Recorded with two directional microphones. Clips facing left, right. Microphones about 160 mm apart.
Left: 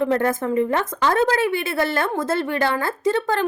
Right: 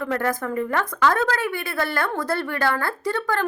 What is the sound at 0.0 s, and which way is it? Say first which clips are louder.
A woman's voice: left 4 dB; 25° left (ahead or behind).